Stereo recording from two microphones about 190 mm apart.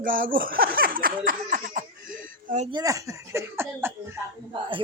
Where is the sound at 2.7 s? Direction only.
20° right (ahead or behind).